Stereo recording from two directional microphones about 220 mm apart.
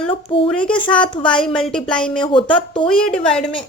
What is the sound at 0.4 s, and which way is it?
A woman's voice, 5° left (ahead or behind).